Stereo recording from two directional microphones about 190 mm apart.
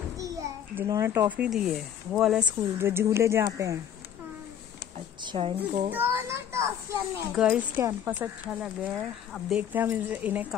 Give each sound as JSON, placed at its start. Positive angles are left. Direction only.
{"t": 0.2, "sound": "a child's voice", "side_deg": -15}
{"t": 2.8, "sound": "a child's voice", "side_deg": -10}
{"t": 4.9, "sound": "speech", "side_deg": -30}
{"t": 5.9, "sound": "a child's voice", "side_deg": -10}